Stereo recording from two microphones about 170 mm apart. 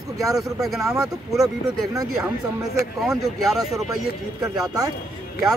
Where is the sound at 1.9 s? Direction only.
20° right (ahead or behind).